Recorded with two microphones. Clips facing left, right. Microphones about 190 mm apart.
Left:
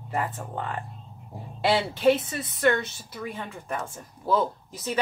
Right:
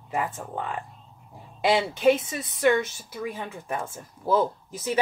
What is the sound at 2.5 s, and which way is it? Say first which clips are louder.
Speech: right 2 dB; 15° right (ahead or behind).